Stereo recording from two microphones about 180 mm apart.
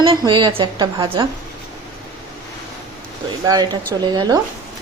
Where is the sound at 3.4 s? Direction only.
20° right (ahead or behind).